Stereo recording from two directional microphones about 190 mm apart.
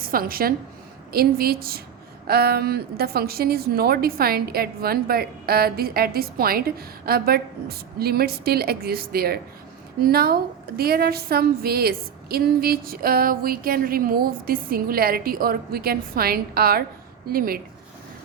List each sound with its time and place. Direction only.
0.0 s a woman's voice: 50° right (ahead or behind)